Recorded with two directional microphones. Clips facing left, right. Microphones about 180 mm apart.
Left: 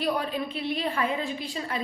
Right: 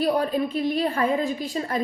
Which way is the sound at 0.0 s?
40° right (ahead or behind).